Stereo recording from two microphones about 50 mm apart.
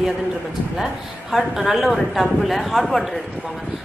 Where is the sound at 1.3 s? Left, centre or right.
Centre.